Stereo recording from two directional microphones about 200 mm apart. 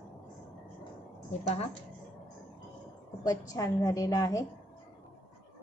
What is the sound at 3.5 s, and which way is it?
Speech, 15° left (ahead or behind).